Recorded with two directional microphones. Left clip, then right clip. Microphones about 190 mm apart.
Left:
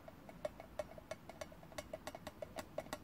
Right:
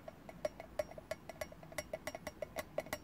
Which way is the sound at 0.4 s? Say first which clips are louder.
Right 5 dB; 25° right (ahead or behind).